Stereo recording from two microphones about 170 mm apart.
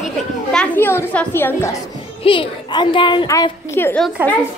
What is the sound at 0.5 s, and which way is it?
A child's voice, 10° left (ahead or behind).